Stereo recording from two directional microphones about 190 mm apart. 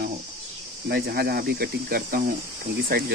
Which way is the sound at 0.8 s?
55° right (ahead or behind).